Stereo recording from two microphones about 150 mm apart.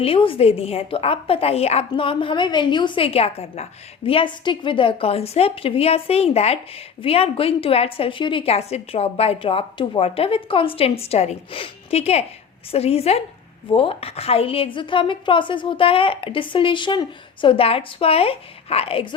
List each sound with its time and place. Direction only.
0.0 s a woman's voice: 40° left (ahead or behind)